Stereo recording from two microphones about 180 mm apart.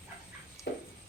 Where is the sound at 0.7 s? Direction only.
60° left (ahead or behind).